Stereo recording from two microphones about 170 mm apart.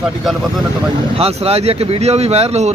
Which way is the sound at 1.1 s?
35° right (ahead or behind).